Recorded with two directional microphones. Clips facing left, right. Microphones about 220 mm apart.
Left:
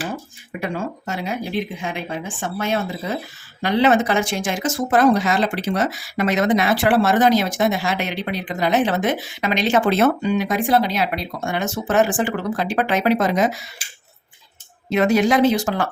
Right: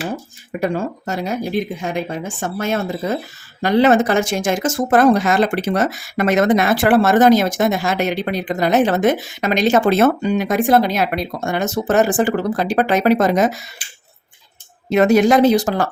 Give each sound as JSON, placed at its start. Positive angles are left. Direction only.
{"t": 0.6, "sound": "speech", "side_deg": -40}
{"t": 14.8, "sound": "speech", "side_deg": -45}